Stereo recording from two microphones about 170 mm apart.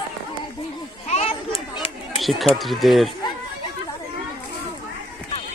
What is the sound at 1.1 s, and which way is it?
Children playing, 35° left (ahead or behind).